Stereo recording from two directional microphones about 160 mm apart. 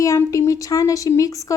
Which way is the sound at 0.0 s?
20° left (ahead or behind).